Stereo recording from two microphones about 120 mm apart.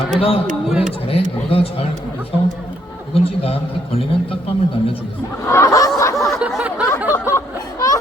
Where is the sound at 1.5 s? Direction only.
55° left (ahead or behind).